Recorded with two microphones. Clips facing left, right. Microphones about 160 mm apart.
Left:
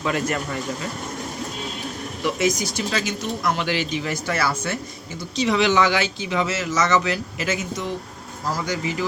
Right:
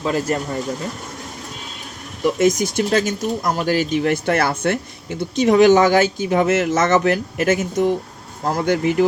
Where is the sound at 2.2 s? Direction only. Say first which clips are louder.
Right 6 dB; 50° right (ahead or behind).